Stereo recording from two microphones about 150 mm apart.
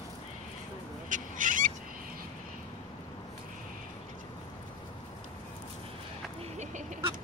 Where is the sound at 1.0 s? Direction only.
60° right (ahead or behind).